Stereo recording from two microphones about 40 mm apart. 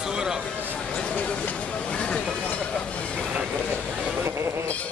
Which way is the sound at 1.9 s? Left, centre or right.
Left.